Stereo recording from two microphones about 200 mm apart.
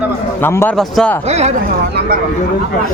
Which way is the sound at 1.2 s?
35° right (ahead or behind).